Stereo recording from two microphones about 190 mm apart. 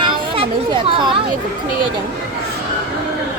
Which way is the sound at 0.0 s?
25° right (ahead or behind).